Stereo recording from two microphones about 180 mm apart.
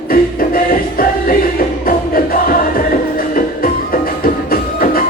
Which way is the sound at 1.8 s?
55° left (ahead or behind).